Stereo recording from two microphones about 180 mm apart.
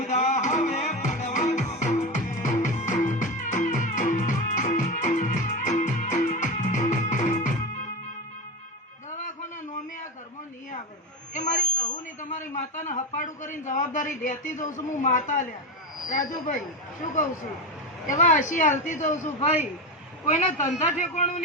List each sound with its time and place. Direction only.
0.0 s music: 45° left (ahead or behind)
11.3 s a sound: 45° left (ahead or behind)
14.9 s speech: 45° left (ahead or behind)
18.0 s a man's voice: 45° left (ahead or behind)